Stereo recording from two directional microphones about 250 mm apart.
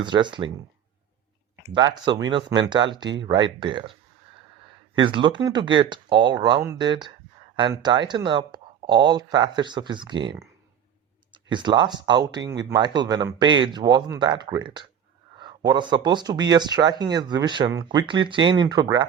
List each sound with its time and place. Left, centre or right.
0.0 s speech: centre
1.6 s speech: centre
4.9 s speech: centre